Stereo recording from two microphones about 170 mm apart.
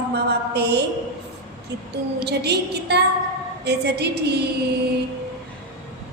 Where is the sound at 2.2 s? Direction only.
80° right.